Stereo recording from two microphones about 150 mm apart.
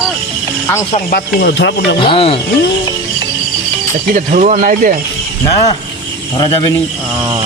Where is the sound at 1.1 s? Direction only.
90° left.